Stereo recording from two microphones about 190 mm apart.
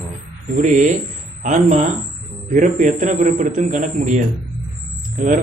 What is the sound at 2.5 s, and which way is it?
A man's voice, 40° right (ahead or behind).